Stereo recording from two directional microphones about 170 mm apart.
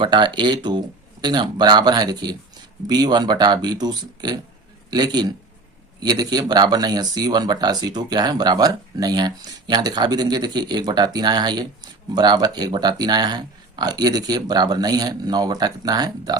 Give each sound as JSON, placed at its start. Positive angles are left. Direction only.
{"t": 0.0, "sound": "speech", "side_deg": -25}